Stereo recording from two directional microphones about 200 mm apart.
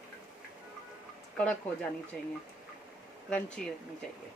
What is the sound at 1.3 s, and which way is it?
Speech, 5° left (ahead or behind).